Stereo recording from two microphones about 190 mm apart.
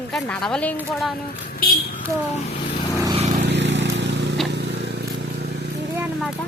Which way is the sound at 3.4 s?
70° right (ahead or behind).